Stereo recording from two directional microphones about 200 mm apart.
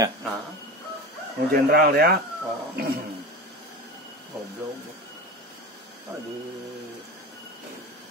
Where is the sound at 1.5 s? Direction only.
50° right (ahead or behind).